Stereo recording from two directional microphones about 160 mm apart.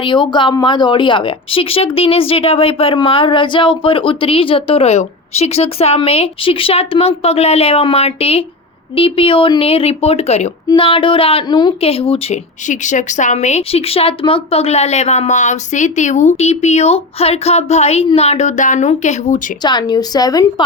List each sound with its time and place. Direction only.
0.0 s speech: 30° left (ahead or behind); by 19.4 s 45° left (ahead or behind)
19.6 s a woman's voice: 25° left (ahead or behind)